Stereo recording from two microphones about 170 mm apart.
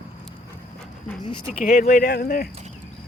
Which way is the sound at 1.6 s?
60° left (ahead or behind).